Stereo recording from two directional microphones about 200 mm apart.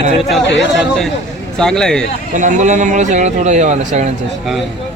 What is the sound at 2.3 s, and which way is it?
A man's voice, 40° right (ahead or behind).